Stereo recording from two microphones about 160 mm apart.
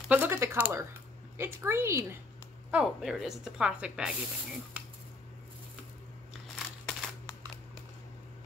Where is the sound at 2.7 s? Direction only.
5° right (ahead or behind).